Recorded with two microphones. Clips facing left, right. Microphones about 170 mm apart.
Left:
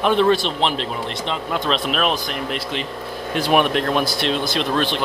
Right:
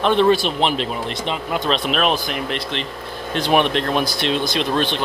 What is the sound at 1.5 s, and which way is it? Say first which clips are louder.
Speech: right 1 dB; centre (ahead or behind).